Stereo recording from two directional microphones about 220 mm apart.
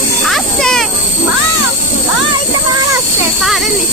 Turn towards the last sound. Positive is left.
turn(degrees=0)  # may be behind; listen again after turning